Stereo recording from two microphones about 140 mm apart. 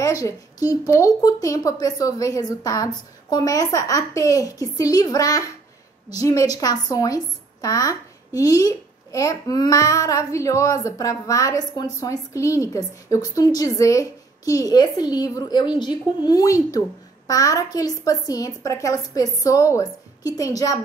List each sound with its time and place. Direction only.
0.0 s a woman's voice: 25° left (ahead or behind)